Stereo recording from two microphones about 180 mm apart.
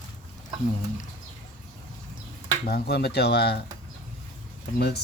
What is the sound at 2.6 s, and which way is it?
Speech, 60° left (ahead or behind).